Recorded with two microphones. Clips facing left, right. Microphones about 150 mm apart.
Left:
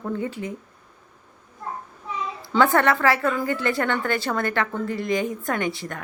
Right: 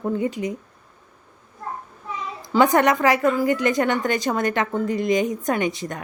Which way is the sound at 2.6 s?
15° right (ahead or behind).